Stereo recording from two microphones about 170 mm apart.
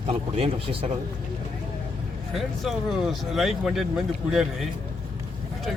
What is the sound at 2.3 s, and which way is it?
Speech, centre (ahead or behind).